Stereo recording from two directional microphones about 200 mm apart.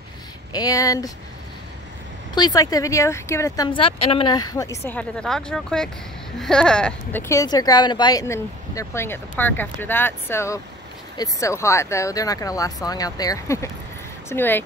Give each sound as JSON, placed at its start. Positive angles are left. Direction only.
{"t": 0.5, "sound": "speech", "side_deg": 20}
{"t": 2.3, "sound": "speech", "side_deg": 20}